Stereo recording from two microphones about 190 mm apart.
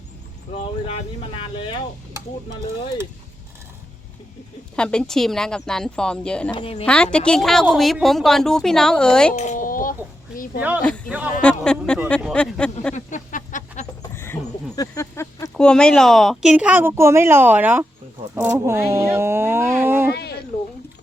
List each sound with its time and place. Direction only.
0.5 s speech: 35° left (ahead or behind)
4.8 s a woman's voice: 5° left (ahead or behind)
6.5 s speech: 30° left (ahead or behind)
6.8 s a woman's voice: 5° left (ahead or behind)
9.3 s a sound: 40° left (ahead or behind)
10.3 s speech: 45° left (ahead or behind)
10.8 s a woman's voice: 5° left (ahead or behind)
12.9 s a sound: 40° left (ahead or behind)
14.0 s a sound: 15° left (ahead or behind)
14.8 s speech: 15° left (ahead or behind)
15.4 s speech: 5° left (ahead or behind); by 20.1 s 10° right (ahead or behind)
20.1 s a sound: 60° left (ahead or behind)